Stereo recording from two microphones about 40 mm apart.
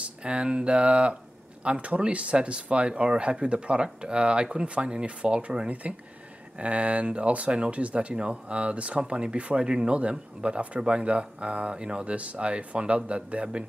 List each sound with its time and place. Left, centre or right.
0.0 s speech: right
5.7 s speech: right